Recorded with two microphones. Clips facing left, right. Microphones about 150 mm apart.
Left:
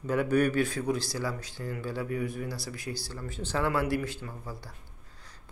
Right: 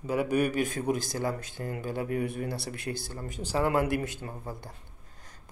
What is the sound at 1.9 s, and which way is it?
A man's voice, 60° right (ahead or behind).